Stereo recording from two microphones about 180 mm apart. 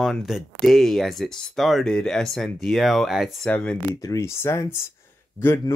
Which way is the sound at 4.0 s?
15° left (ahead or behind).